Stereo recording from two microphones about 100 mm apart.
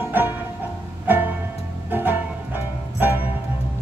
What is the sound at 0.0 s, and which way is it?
Music, 20° right (ahead or behind).